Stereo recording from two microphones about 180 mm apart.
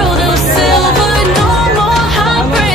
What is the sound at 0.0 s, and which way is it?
Music, centre (ahead or behind).